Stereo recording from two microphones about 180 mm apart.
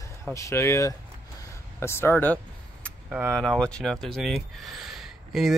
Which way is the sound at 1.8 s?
15° left (ahead or behind).